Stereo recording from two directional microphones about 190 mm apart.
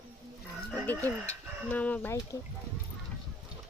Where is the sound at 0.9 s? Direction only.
10° left (ahead or behind).